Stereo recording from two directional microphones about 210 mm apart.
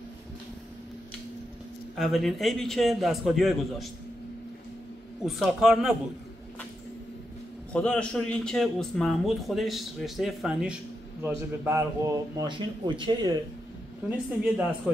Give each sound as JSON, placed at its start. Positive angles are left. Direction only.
{"t": 2.0, "sound": "a man's voice", "side_deg": 0}
{"t": 5.2, "sound": "a man's voice", "side_deg": 0}
{"t": 7.7, "sound": "a man's voice", "side_deg": 5}
{"t": 14.0, "sound": "a woman's voice", "side_deg": -5}